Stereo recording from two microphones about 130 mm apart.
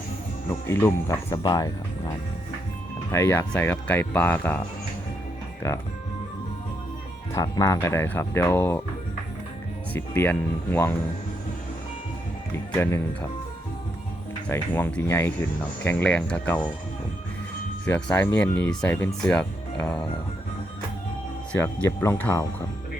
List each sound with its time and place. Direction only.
0.7 s speech: 20° left (ahead or behind)
1.4 s speech: 30° left (ahead or behind)
3.1 s speech: 20° left (ahead or behind)
5.6 s speech: 25° left (ahead or behind)
7.3 s speech: 25° left (ahead or behind)
9.9 s speech: 15° left (ahead or behind)
12.7 s speech: 20° left (ahead or behind)
14.5 s speech: 15° left (ahead or behind)
17.8 s speech: 15° left (ahead or behind)
18.7 s speech: 5° left (ahead or behind)
21.6 s speech: 20° left (ahead or behind)